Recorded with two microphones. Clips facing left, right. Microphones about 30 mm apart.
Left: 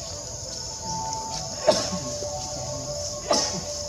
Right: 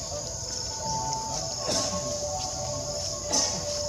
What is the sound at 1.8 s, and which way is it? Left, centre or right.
Music, centre.